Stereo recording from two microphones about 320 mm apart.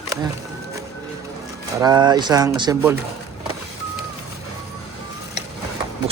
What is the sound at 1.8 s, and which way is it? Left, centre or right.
Speech, centre.